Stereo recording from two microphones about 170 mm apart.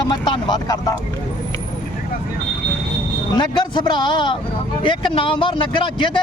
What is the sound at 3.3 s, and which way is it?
Speech, 25° left (ahead or behind).